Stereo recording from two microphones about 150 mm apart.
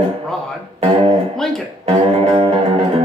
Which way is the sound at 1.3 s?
5° left (ahead or behind).